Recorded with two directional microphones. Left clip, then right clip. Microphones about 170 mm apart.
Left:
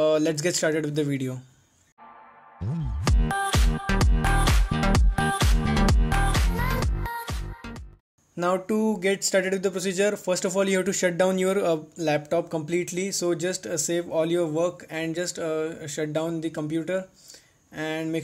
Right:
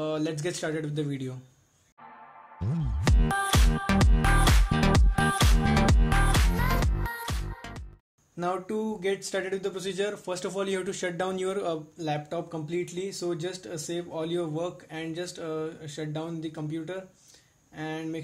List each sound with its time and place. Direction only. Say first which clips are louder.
0.0 s speech: left 8 dB; 45° left (ahead or behind)
2.6 s music: left 1 dB; centre (ahead or behind)
8.4 s speech: left 6 dB; 45° left (ahead or behind)